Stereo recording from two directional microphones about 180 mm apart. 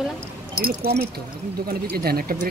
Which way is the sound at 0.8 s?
60° right (ahead or behind).